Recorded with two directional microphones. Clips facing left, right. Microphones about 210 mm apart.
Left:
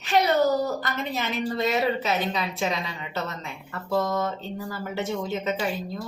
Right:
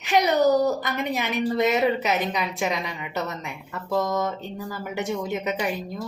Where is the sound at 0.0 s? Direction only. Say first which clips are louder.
Right 1 dB; 15° right (ahead or behind).